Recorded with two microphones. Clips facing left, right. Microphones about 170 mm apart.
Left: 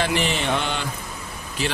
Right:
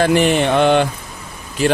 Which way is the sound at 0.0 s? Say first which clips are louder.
Right 9 dB; 50° right (ahead or behind).